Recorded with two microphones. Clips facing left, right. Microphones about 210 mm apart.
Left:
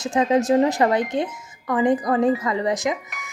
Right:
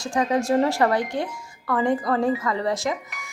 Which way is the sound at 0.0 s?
20° left (ahead or behind).